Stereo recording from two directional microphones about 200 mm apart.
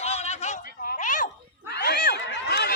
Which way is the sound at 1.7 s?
55° left (ahead or behind).